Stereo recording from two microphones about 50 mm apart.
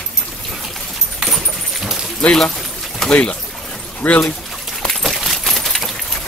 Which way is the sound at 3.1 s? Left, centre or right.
Left.